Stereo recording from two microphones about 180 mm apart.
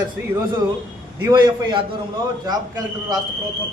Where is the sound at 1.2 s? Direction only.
25° right (ahead or behind).